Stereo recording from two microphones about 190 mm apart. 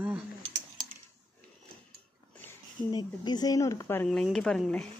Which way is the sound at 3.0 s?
25° left (ahead or behind).